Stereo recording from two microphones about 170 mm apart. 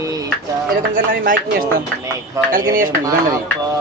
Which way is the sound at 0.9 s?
55° right (ahead or behind).